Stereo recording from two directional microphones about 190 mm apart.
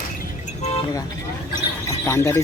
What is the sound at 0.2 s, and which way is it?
Vehicle, 35° left (ahead or behind).